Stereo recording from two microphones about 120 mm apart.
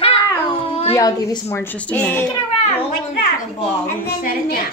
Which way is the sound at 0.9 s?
30° left (ahead or behind).